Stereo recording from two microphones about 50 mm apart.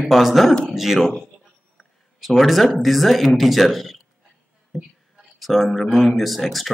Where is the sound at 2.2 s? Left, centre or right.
Centre.